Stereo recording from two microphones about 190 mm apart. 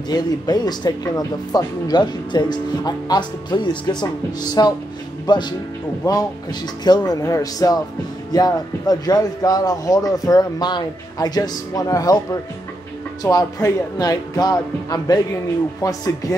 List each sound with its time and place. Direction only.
0.1 s speech: 20° left (ahead or behind)